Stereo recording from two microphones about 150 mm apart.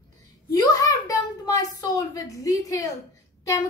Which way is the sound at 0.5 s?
20° left (ahead or behind).